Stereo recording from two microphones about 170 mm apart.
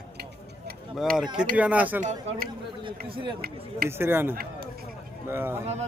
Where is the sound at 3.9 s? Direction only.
15° right (ahead or behind).